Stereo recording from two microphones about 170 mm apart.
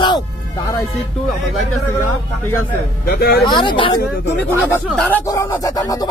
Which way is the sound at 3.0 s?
65° left (ahead or behind).